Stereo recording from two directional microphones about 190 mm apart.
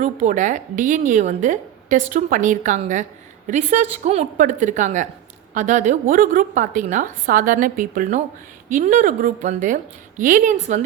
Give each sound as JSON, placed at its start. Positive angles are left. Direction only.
{"t": 0.0, "sound": "a woman's voice", "side_deg": -40}